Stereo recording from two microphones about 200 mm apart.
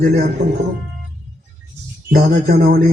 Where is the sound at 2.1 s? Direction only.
50° right (ahead or behind).